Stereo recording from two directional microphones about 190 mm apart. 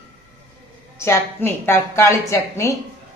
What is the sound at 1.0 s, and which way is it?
A woman's voice, 10° left (ahead or behind).